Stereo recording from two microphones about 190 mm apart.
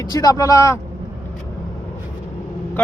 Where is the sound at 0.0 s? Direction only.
20° left (ahead or behind).